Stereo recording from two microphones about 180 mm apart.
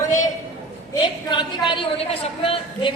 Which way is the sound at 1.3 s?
25° left (ahead or behind).